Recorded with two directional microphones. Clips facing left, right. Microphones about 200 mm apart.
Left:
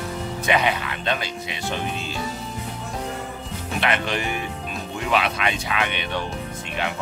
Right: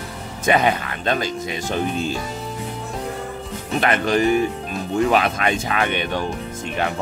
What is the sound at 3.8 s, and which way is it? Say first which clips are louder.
Speech: right 7 dB; 45° right (ahead or behind).